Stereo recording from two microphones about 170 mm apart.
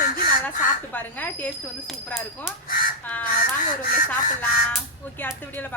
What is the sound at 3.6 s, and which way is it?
Speech, 55° left (ahead or behind).